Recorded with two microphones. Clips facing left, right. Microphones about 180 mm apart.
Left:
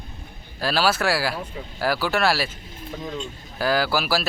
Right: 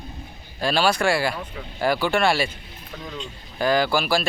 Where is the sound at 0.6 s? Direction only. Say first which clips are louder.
Right 1 dB; 5° left (ahead or behind).